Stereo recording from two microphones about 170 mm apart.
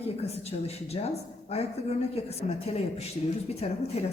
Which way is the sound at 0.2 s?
35° left (ahead or behind).